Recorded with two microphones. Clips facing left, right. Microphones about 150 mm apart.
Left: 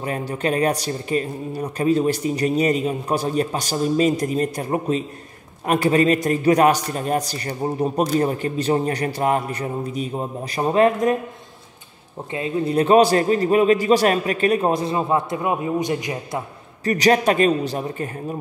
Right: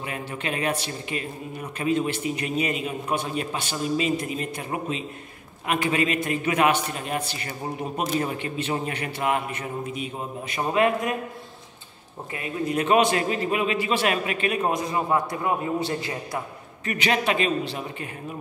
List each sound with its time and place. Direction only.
0.0 s a man's voice: 40° left (ahead or behind)
12.3 s a man's voice: 25° left (ahead or behind)
16.8 s a man's voice: 40° left (ahead or behind)